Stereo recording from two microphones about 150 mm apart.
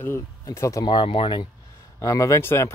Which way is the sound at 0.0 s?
20° left (ahead or behind).